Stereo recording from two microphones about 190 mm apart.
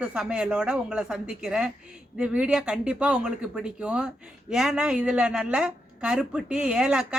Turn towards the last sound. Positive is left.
turn(degrees=-5)  # may be behind; listen again after turning